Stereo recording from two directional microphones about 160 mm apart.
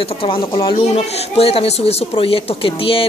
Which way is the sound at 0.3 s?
35° left (ahead or behind).